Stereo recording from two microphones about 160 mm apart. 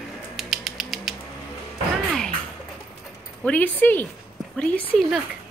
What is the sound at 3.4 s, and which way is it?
Speech, 10° left (ahead or behind).